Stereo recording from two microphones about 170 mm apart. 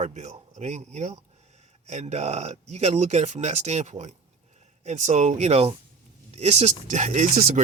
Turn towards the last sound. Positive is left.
turn(degrees=-45)  # may be behind; listen again after turning